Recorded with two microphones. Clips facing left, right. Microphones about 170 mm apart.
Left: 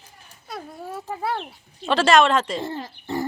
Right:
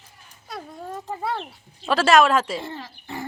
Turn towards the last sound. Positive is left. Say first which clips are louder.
# left 6 dB
turn(degrees=40)  # may be behind; listen again after turning